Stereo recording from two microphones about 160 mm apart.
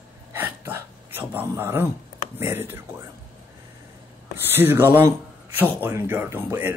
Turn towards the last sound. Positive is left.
turn(degrees=-15)  # may be behind; listen again after turning